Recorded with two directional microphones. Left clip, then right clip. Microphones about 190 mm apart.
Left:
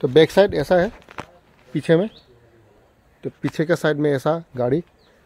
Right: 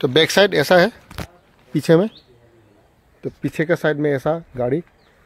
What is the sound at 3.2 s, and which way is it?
Speech, 10° right (ahead or behind).